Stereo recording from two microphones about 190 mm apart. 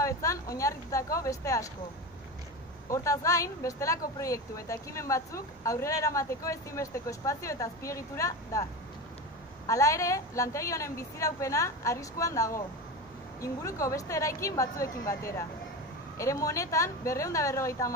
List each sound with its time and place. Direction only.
0.0 s speech: 15° left (ahead or behind)
2.9 s speech: 15° left (ahead or behind)
9.7 s speech: 15° left (ahead or behind)